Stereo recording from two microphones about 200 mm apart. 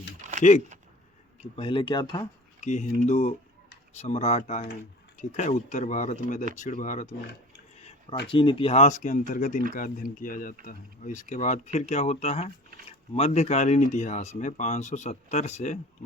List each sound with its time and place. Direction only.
0.3 s a sound: 35° right (ahead or behind)
1.5 s speech: 25° left (ahead or behind)
2.6 s speech: 35° left (ahead or behind)
8.3 s speech: 25° left (ahead or behind)